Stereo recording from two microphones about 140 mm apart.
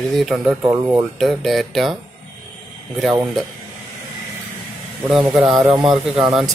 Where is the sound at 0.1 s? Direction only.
Centre (ahead or behind).